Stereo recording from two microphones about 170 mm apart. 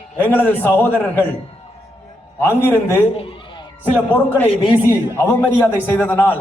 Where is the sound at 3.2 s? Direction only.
30° left (ahead or behind).